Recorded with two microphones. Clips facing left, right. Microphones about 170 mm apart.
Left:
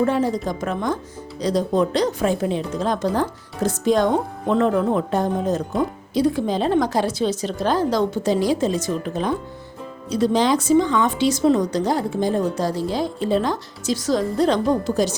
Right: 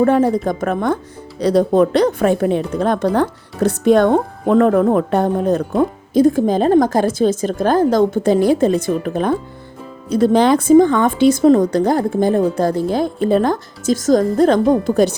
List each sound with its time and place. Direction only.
0.0 s speech: 55° right (ahead or behind)